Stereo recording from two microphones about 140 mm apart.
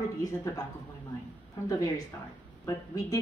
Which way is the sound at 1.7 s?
25° left (ahead or behind).